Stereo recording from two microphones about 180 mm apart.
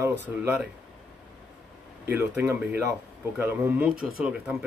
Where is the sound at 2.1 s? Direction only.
10° right (ahead or behind).